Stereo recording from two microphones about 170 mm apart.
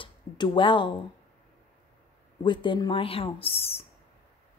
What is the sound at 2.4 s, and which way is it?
A woman's voice, 30° left (ahead or behind).